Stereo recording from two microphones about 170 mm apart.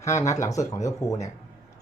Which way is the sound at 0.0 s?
15° left (ahead or behind).